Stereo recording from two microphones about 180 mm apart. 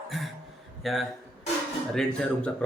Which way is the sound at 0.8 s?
Centre (ahead or behind).